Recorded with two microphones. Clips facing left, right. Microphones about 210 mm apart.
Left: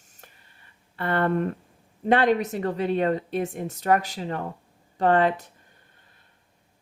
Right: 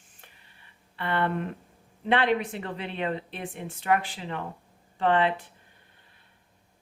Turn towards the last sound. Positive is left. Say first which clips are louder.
# left 3 dB
turn(degrees=45)  # may be behind; listen again after turning